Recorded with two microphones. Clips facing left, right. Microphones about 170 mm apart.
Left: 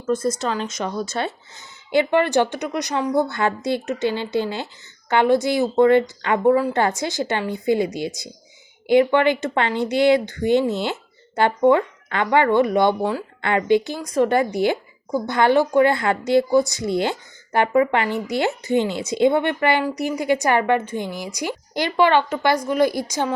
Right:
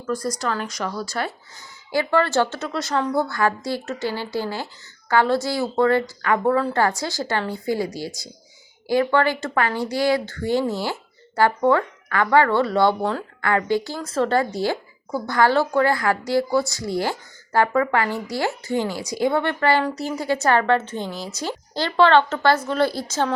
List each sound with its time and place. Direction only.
0.0 s speech: 25° left (ahead or behind)